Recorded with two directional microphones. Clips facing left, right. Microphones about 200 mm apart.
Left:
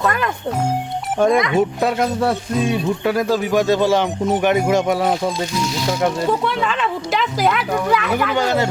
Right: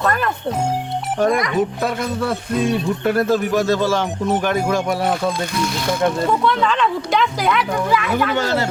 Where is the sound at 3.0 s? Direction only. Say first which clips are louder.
Right 3 dB; 10° left (ahead or behind).